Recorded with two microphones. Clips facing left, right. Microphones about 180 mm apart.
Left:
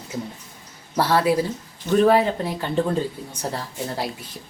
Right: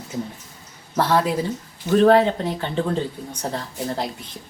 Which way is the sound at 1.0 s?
5° left (ahead or behind).